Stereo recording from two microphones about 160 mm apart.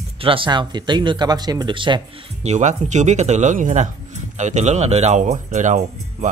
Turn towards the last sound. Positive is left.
turn(degrees=-50)  # may be behind; listen again after turning